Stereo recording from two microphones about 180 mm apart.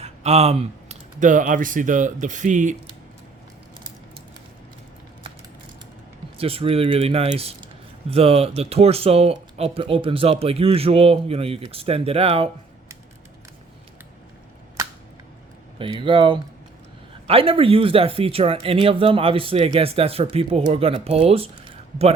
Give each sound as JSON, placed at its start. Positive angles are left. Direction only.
{"t": 0.0, "sound": "speech", "side_deg": -35}
{"t": 6.3, "sound": "speech", "side_deg": -30}
{"t": 15.8, "sound": "speech", "side_deg": -30}